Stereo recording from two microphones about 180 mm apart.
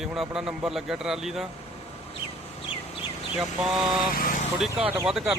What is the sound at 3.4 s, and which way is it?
Speech, centre (ahead or behind).